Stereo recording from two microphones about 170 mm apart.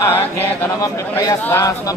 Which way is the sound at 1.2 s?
15° left (ahead or behind).